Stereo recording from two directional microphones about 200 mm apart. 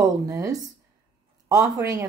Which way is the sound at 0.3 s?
15° right (ahead or behind).